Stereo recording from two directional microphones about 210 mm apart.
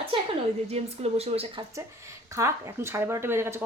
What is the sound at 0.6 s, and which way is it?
Speech, 30° right (ahead or behind).